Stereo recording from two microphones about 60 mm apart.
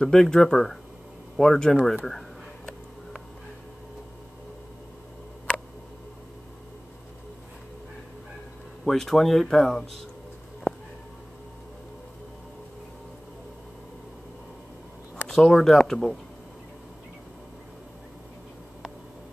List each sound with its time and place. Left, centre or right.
0.0 s speech: centre
8.8 s speech: centre
15.2 s speech: centre